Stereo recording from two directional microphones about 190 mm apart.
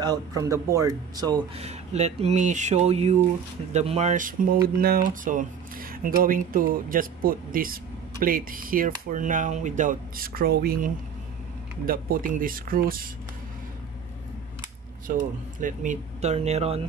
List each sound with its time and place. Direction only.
0.0 s speech: 20° right (ahead or behind)
1.6 s speech: 35° right (ahead or behind)
15.0 s speech: 45° right (ahead or behind)